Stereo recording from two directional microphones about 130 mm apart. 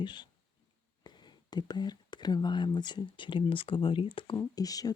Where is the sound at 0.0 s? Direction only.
35° left (ahead or behind).